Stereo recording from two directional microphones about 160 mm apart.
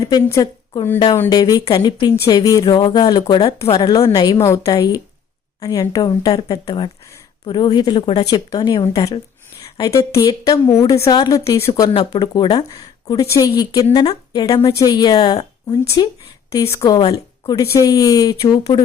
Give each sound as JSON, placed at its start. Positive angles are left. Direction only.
{"t": 0.0, "sound": "a woman's voice", "side_deg": 20}